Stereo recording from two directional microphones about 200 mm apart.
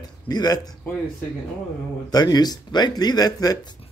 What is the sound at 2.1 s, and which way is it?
Speech, 20° left (ahead or behind).